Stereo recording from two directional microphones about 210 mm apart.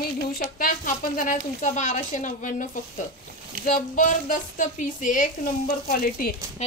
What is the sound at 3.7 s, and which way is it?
Speech, 40° left (ahead or behind).